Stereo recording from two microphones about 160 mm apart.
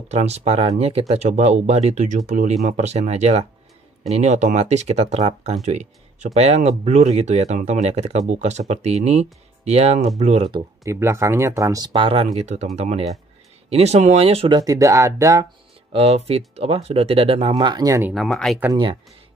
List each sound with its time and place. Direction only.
0.1 s speech: 40° right (ahead or behind)
10.8 s speech: 15° right (ahead or behind); by 12.3 s 35° right (ahead or behind)
12.4 s speech: 45° right (ahead or behind)
14.6 s speech: 20° right (ahead or behind)
15.9 s speech: 40° right (ahead or behind)
17.6 s speech: 25° right (ahead or behind)
18.1 s speech: centre (ahead or behind)
18.7 s speech: 30° right (ahead or behind)